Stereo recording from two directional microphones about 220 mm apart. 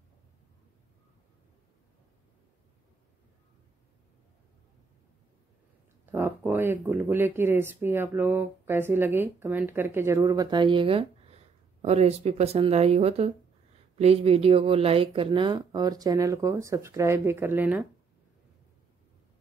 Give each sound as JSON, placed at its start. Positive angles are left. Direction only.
{"t": 6.1, "sound": "speech", "side_deg": -10}